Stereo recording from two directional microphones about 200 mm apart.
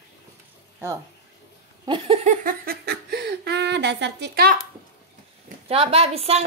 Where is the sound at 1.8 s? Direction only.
25° right (ahead or behind); by 4.5 s 55° right (ahead or behind).